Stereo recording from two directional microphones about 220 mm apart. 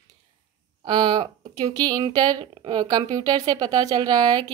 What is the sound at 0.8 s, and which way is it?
Speech, 20° right (ahead or behind).